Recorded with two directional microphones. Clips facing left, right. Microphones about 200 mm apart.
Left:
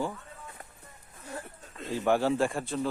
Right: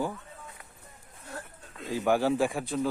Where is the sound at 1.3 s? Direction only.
Centre (ahead or behind).